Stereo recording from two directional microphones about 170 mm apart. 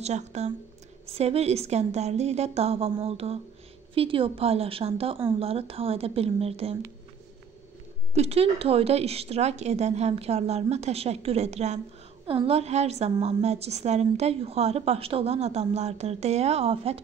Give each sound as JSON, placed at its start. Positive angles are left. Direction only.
{"t": 0.0, "sound": "a woman's voice", "side_deg": -40}
{"t": 8.1, "sound": "a woman's voice", "side_deg": -40}